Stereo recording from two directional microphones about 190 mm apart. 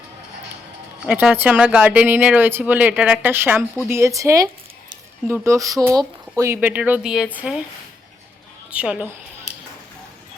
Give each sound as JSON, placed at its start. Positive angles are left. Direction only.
{"t": 1.0, "sound": "speech", "side_deg": -5}
{"t": 8.7, "sound": "speech", "side_deg": -5}